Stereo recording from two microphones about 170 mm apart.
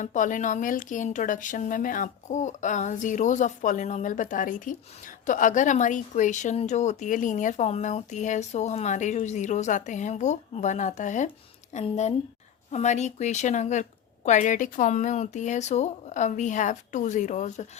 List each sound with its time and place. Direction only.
0.0 s a woman's voice: 50° left (ahead or behind)